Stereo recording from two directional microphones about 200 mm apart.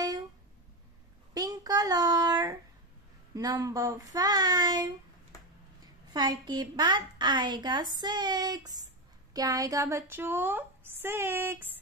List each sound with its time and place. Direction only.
1.3 s a sound: 20° right (ahead or behind)
3.3 s a woman's voice: 15° right (ahead or behind)
6.1 s a woman's voice: 20° right (ahead or behind)